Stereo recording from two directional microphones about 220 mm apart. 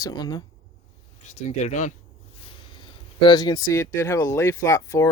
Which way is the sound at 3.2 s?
20° left (ahead or behind).